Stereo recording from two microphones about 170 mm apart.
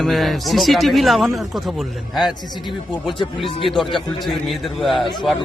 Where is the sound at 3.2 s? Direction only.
30° left (ahead or behind).